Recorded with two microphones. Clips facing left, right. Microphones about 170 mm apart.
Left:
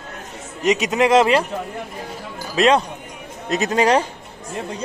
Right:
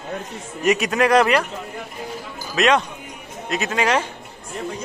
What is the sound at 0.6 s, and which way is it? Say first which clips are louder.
Speech: left 1 dB; 20° left (ahead or behind).